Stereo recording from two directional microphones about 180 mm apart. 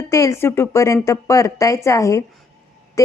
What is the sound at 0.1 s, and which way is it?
A woman's voice, 15° left (ahead or behind).